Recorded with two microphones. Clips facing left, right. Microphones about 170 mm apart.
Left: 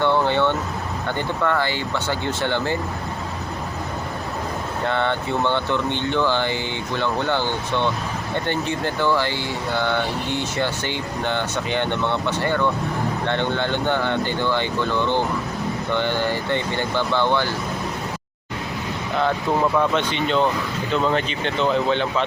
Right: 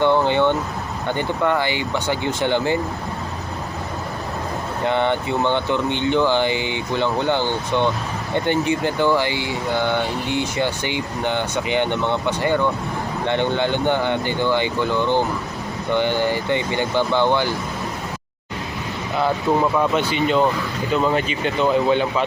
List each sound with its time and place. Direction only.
0.0 s vehicle: 15° right (ahead or behind)
1.5 s speech: 15° right (ahead or behind)
4.9 s speech: 15° right (ahead or behind)
19.7 s speech: 10° right (ahead or behind)